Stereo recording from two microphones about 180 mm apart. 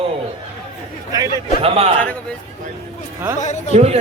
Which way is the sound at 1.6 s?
30° right (ahead or behind).